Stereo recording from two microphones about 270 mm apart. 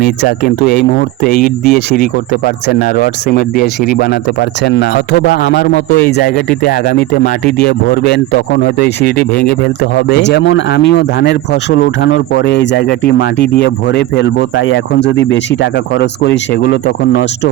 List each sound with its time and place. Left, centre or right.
0.0 s speech: left